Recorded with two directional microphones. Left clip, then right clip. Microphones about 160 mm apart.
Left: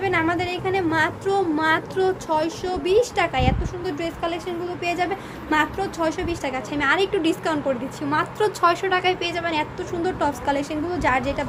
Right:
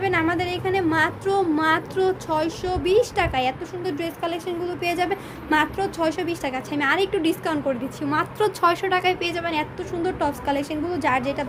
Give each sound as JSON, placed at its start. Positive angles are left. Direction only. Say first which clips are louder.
{"t": 0.0, "sound": "a woman's voice", "louder": "even", "side_deg": -10}
{"t": 4.6, "sound": "a woman's voice", "louder": "even", "side_deg": -30}